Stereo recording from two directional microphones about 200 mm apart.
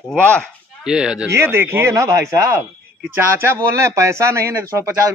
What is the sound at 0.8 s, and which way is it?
Speech, 5° right (ahead or behind).